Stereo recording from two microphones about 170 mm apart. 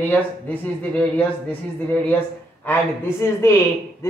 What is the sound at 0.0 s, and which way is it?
Speech, 10° left (ahead or behind).